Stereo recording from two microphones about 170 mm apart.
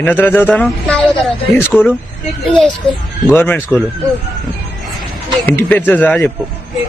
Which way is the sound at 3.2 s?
10° left (ahead or behind).